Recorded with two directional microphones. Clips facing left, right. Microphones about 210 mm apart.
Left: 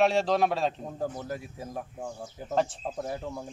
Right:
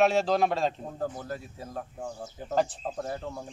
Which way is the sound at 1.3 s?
15° left (ahead or behind).